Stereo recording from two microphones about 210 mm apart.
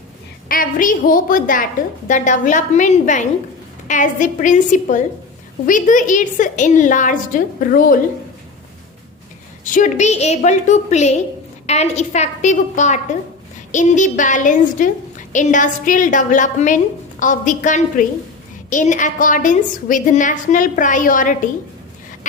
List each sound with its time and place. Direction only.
0.4 s a woman's voice: 40° left (ahead or behind)
9.6 s a woman's voice: 40° left (ahead or behind)